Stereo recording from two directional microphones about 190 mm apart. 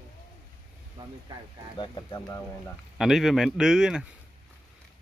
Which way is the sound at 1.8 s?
20° left (ahead or behind).